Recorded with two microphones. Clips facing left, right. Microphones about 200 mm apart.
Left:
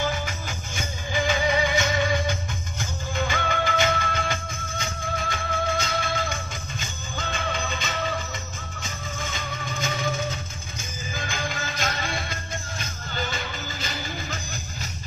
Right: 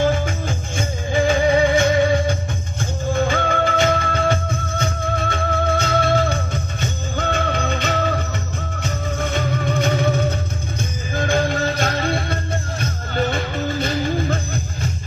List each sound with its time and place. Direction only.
0.5 s music: 30° right (ahead or behind)
2.8 s music: 55° right (ahead or behind)
3.6 s music: 35° right (ahead or behind)
4.7 s music: 60° right (ahead or behind)